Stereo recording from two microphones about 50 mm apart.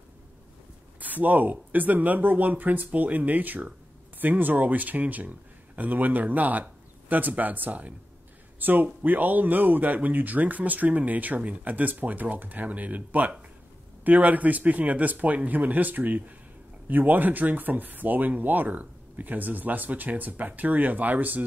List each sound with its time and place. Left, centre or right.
0.9 s speech: right